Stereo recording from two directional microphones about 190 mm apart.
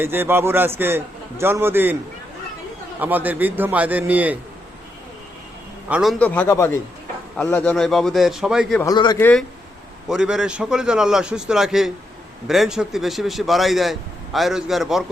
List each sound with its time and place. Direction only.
0.0 s a man's voice: 10° right (ahead or behind)
3.0 s a man's voice: 10° right (ahead or behind)
5.9 s a man's voice: centre (ahead or behind)
8.8 s a man's voice: 20° left (ahead or behind)
10.1 s a man's voice: 5° right (ahead or behind)